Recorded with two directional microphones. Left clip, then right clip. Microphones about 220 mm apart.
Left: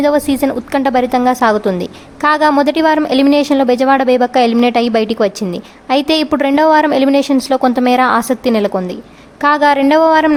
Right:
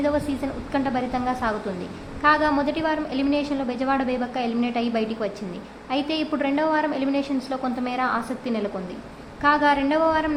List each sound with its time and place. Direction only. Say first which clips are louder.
0.0 s a woman's voice: left 12 dB; 55° left (ahead or behind)